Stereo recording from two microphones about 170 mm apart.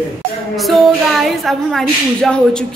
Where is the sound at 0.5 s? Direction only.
Centre (ahead or behind).